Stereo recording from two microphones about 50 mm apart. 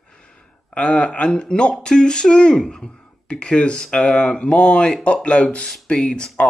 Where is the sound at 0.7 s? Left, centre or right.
Left.